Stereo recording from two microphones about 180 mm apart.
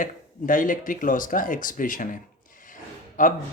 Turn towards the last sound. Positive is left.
turn(degrees=45)  # may be behind; listen again after turning